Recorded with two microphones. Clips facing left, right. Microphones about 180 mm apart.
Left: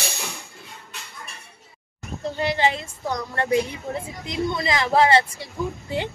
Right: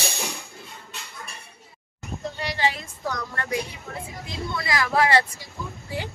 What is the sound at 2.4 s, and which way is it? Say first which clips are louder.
Speech: left 5 dB; 25° left (ahead or behind).